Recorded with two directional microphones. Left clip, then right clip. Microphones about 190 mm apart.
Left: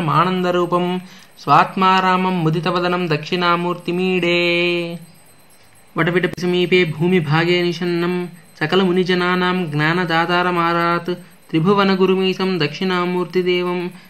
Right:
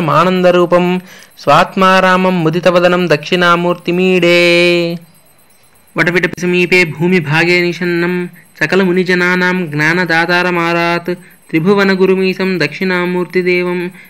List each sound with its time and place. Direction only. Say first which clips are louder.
0.0 s speech: right 7 dB; 50° right (ahead or behind)
5.9 s a man's voice: right 6 dB; 25° right (ahead or behind)
11.0 s speech: right 5 dB; 15° right (ahead or behind)